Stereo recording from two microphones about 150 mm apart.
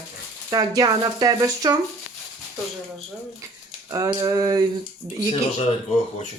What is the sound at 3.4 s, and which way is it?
Speech, 25° right (ahead or behind).